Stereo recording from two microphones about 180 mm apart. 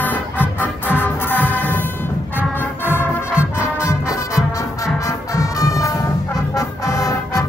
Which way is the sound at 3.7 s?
15° left (ahead or behind).